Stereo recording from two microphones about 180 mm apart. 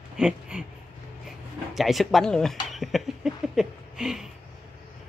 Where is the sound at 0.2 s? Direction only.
5° right (ahead or behind).